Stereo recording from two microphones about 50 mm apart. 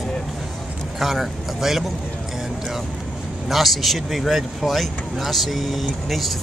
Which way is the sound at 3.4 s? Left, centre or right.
Centre.